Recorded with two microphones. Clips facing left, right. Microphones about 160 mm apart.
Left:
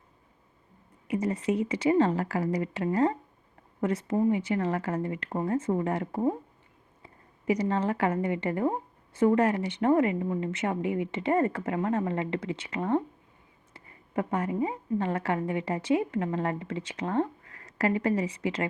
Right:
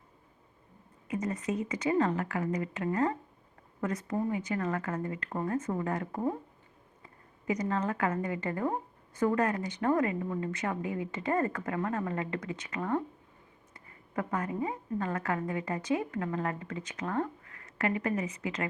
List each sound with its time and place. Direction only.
1.0 s a woman's voice: 30° left (ahead or behind)